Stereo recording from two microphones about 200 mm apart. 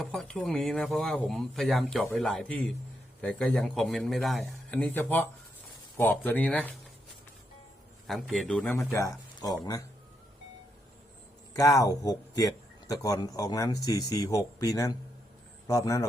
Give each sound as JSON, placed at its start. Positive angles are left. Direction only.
{"t": 0.0, "sound": "a man's voice", "side_deg": 5}
{"t": 8.0, "sound": "speech", "side_deg": 0}
{"t": 11.5, "sound": "speech", "side_deg": 15}